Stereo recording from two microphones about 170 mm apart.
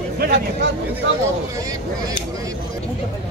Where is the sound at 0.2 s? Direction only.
65° right (ahead or behind).